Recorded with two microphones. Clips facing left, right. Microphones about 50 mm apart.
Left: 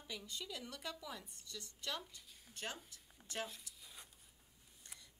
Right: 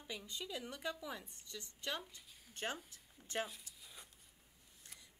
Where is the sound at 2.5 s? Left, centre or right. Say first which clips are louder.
Right 4 dB; right.